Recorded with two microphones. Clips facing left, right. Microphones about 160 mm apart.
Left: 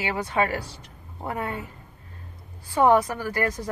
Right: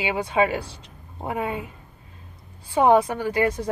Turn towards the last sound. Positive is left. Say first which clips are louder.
# right 4 dB
turn(degrees=-25)  # may be behind; listen again after turning